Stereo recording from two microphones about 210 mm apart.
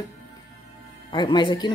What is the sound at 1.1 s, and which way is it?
Speech, 20° left (ahead or behind).